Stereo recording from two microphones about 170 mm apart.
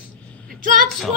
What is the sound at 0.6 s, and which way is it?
Female singing, 50° right (ahead or behind).